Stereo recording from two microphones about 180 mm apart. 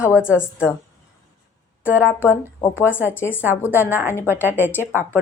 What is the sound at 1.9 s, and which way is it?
Speech, 10° right (ahead or behind).